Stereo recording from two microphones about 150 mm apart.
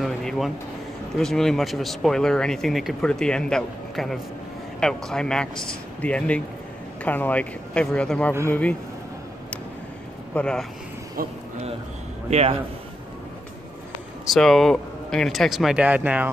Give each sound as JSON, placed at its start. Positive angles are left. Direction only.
{"t": 0.0, "sound": "a sound", "side_deg": 0}
{"t": 1.1, "sound": "a man's voice", "side_deg": 0}
{"t": 10.3, "sound": "a man's voice", "side_deg": 5}
{"t": 11.2, "sound": "speech", "side_deg": -75}
{"t": 12.3, "sound": "speech", "side_deg": -45}
{"t": 14.2, "sound": "a man's voice", "side_deg": 0}